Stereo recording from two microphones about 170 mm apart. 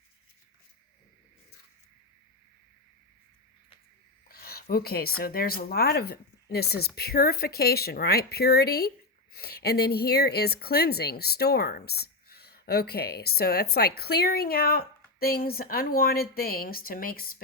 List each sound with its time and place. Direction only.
4.3 s speech: 65° left (ahead or behind)